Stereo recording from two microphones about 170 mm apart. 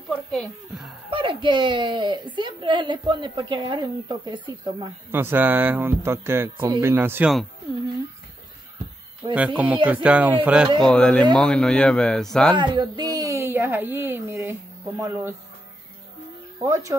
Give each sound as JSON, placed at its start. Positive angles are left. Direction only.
{"t": 0.1, "sound": "a woman's voice", "side_deg": 0}
{"t": 1.1, "sound": "a woman's voice", "side_deg": -30}
{"t": 5.1, "sound": "speech", "side_deg": -15}
{"t": 9.2, "sound": "a woman's voice", "side_deg": -25}
{"t": 10.0, "sound": "speech", "side_deg": -10}
{"t": 10.8, "sound": "speech", "side_deg": 5}
{"t": 12.5, "sound": "speech", "side_deg": -25}
{"t": 16.6, "sound": "a woman's voice", "side_deg": -20}